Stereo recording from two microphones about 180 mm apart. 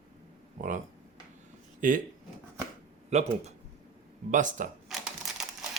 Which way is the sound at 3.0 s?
35° right (ahead or behind).